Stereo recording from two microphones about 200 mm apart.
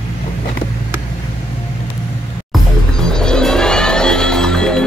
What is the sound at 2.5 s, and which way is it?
Music, centre (ahead or behind).